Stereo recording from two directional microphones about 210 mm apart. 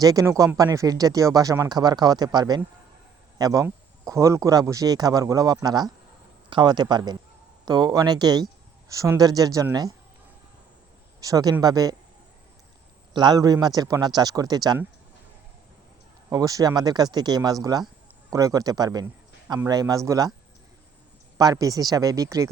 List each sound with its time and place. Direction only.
0.0 s speech: 15° right (ahead or behind)
11.2 s speech: 15° right (ahead or behind)
13.1 s speech: 20° right (ahead or behind)
16.3 s speech: 15° right (ahead or behind)
21.3 s speech: 15° right (ahead or behind)